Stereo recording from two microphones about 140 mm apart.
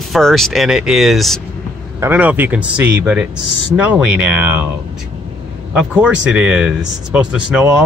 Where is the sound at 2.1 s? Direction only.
10° right (ahead or behind).